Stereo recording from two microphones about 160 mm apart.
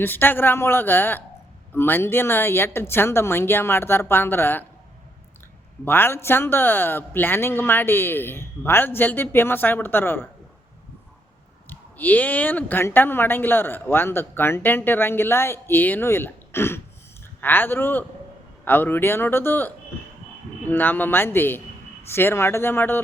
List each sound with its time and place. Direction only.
0.0 s speech: 10° left (ahead or behind)
5.8 s speech: 15° left (ahead or behind)
11.7 s speech: 10° left (ahead or behind)